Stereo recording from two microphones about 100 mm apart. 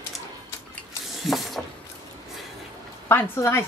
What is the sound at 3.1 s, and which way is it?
Speech, 25° left (ahead or behind).